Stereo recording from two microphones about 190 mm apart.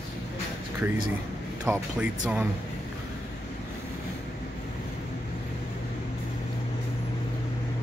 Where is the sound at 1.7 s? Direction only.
15° right (ahead or behind).